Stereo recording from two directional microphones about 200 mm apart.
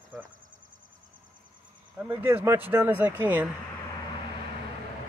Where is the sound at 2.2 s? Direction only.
10° right (ahead or behind).